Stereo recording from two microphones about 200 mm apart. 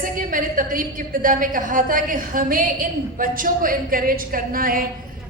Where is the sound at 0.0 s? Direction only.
45° right (ahead or behind).